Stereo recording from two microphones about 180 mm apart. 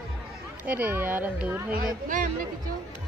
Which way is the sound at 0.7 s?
10° right (ahead or behind).